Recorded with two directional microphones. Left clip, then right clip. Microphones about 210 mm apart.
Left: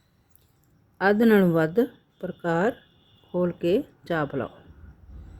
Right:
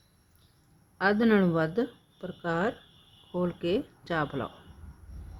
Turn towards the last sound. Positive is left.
turn(degrees=20)  # may be behind; listen again after turning